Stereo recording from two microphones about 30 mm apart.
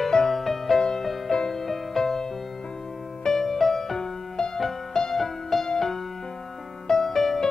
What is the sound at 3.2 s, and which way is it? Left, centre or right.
Music, centre.